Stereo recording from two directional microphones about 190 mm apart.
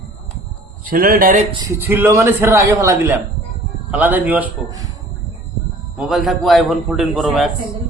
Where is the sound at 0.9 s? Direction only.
50° right (ahead or behind).